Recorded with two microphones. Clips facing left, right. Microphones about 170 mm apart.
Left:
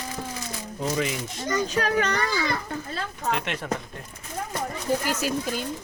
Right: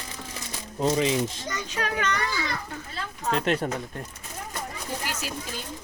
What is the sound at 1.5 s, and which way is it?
Speech, 40° left (ahead or behind).